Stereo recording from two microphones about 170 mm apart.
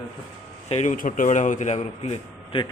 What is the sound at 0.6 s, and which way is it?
Speech, 45° left (ahead or behind).